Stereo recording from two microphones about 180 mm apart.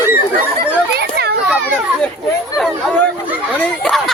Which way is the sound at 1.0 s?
65° right (ahead or behind).